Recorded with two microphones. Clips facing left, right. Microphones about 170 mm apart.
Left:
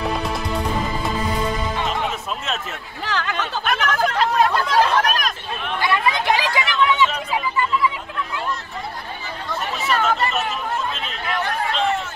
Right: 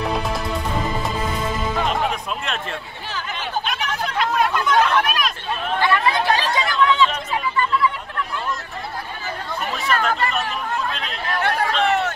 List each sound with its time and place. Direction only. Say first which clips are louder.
3.1 s a sound: left 5 dB; 80° left
3.6 s a sound: left 5 dB; 55° left (ahead or behind)
4.2 s chatter: right 1 dB; 35° left (ahead or behind)
5.8 s chatter: right 1 dB; 15° left (ahead or behind)
9.8 s chatter: left 1 dB; centre (ahead or behind)
11.4 s chatter: right 3 dB; 70° right (ahead or behind)